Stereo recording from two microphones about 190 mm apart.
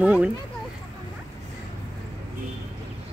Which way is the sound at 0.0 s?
10° right (ahead or behind).